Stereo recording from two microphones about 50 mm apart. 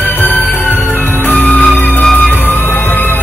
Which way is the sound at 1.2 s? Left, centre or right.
Left.